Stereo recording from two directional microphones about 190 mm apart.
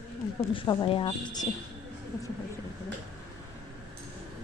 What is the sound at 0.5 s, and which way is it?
Speech, 25° left (ahead or behind).